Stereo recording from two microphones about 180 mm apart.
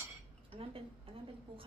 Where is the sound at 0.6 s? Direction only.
30° right (ahead or behind).